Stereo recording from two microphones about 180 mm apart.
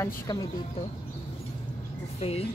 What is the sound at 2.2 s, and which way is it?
Speech, 35° left (ahead or behind).